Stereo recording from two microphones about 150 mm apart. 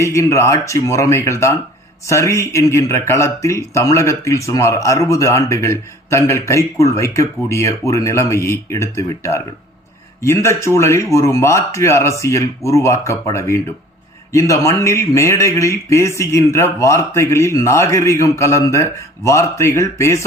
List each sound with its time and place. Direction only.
0.0 s speech: 20° left (ahead or behind)